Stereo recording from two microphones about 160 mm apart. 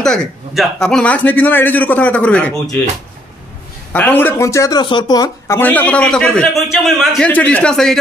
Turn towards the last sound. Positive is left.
turn(degrees=5)  # may be behind; listen again after turning